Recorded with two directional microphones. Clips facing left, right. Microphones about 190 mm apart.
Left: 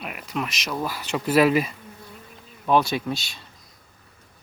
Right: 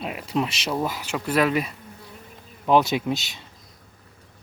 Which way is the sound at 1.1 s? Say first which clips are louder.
Left 4 dB; 5° left (ahead or behind).